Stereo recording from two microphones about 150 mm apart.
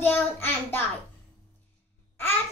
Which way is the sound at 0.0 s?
15° left (ahead or behind).